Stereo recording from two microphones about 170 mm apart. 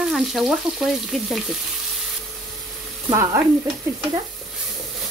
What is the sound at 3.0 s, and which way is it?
Frying, 15° right (ahead or behind).